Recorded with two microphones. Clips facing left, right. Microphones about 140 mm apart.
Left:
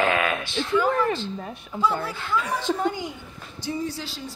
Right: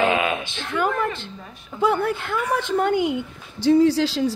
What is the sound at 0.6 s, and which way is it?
A woman's voice, 60° right (ahead or behind).